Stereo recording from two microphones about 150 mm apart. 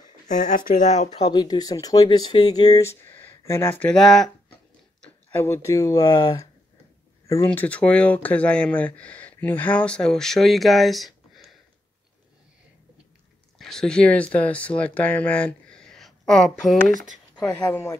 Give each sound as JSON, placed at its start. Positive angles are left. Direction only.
{"t": 0.3, "sound": "speech", "side_deg": 55}
{"t": 1.3, "sound": "speech", "side_deg": 30}
{"t": 3.8, "sound": "speech", "side_deg": 5}
{"t": 5.4, "sound": "speech", "side_deg": 20}
{"t": 7.4, "sound": "speech", "side_deg": 10}
{"t": 13.6, "sound": "speech", "side_deg": 5}